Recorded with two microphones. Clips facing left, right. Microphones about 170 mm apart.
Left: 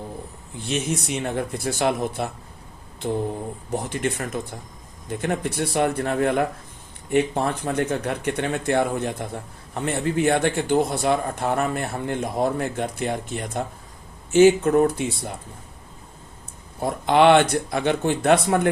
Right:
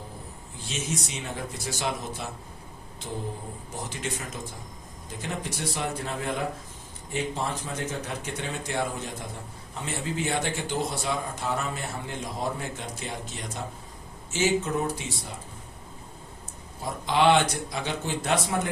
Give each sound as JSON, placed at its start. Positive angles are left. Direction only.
{"t": 0.6, "sound": "a man's voice", "side_deg": 60}
{"t": 16.8, "sound": "a man's voice", "side_deg": 60}